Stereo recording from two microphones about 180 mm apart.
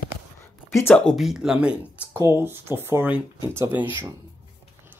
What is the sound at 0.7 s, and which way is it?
Speech, 10° left (ahead or behind).